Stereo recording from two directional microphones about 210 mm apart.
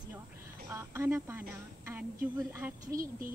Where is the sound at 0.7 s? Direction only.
10° right (ahead or behind).